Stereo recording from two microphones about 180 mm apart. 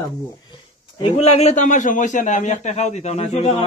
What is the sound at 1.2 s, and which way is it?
A man's voice, 35° left (ahead or behind).